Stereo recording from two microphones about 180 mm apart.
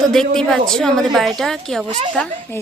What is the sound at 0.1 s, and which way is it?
A woman's voice, 5° left (ahead or behind).